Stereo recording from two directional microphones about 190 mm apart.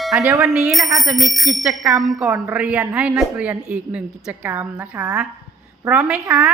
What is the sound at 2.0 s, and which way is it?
Speech, centre (ahead or behind).